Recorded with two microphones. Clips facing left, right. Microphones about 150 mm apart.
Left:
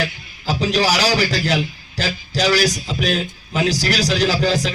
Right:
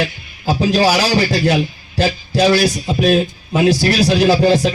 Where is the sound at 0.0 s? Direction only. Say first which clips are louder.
Right 4 dB; 30° right (ahead or behind).